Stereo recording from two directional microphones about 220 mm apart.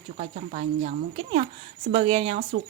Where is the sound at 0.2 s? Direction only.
35° right (ahead or behind).